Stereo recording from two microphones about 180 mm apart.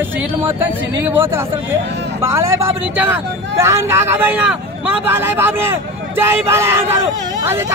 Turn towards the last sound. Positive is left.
turn(degrees=-15)  # may be behind; listen again after turning